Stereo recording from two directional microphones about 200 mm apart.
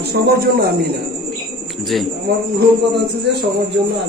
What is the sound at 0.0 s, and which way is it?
Speech, 55° right (ahead or behind).